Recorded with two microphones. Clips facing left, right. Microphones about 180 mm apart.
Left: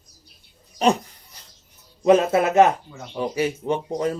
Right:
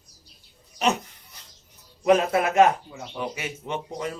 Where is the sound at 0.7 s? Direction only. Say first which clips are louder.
Left 5 dB; 35° left (ahead or behind).